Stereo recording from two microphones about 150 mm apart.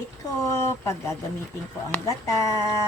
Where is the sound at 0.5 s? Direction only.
15° left (ahead or behind).